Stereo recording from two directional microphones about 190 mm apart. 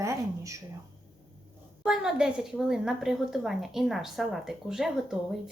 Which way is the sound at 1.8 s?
5° right (ahead or behind).